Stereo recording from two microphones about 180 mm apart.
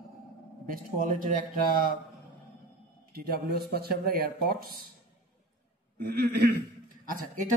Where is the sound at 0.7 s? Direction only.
50° right (ahead or behind).